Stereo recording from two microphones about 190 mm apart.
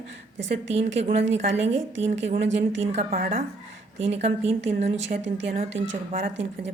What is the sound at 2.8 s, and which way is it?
Speech, 35° right (ahead or behind).